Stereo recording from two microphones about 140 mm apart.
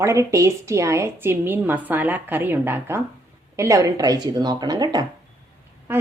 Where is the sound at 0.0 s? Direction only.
20° right (ahead or behind).